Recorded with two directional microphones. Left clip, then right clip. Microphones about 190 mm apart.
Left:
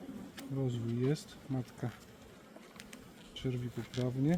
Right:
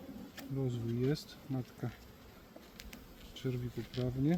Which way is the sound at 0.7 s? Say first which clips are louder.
Even; 5° left (ahead or behind).